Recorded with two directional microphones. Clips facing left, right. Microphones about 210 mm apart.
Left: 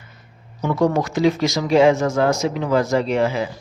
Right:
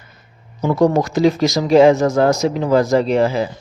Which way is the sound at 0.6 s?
35° right (ahead or behind).